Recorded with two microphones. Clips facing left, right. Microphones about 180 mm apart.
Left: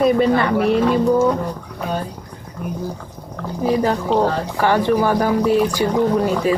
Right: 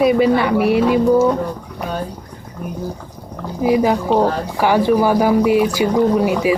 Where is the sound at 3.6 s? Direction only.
10° right (ahead or behind).